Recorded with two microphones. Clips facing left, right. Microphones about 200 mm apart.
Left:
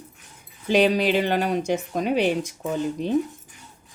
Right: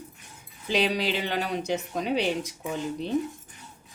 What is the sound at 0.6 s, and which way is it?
A woman's voice, 50° left (ahead or behind).